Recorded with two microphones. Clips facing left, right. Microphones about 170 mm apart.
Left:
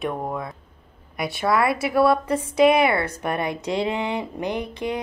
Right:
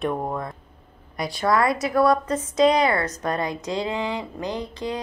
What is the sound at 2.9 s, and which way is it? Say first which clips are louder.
A woman's voice: even; 30° left (ahead or behind).